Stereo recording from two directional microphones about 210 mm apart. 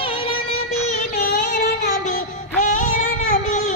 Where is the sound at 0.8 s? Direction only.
35° left (ahead or behind).